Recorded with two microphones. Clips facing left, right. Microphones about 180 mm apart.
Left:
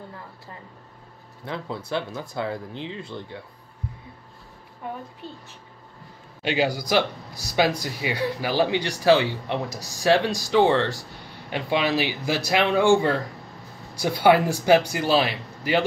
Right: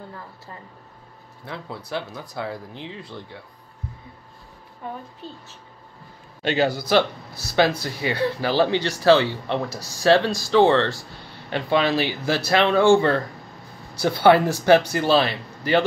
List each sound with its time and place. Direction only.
1.8 s speech: 25° left (ahead or behind)
6.4 s speech: 10° left (ahead or behind)